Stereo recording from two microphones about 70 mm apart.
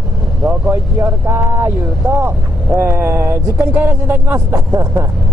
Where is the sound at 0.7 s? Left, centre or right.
Right.